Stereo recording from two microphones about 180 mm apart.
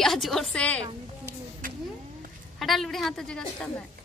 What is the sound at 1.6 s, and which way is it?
Vehicle, 50° right (ahead or behind).